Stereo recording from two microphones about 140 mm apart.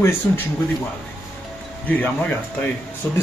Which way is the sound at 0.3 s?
20° left (ahead or behind).